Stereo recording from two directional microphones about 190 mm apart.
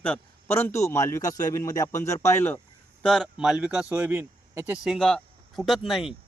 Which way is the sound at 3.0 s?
Centre (ahead or behind).